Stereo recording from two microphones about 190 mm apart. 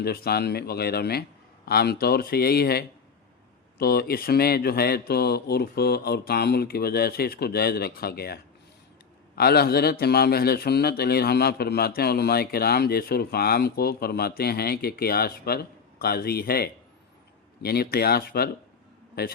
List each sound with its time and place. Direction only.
0.0 s a man's voice: 55° left (ahead or behind)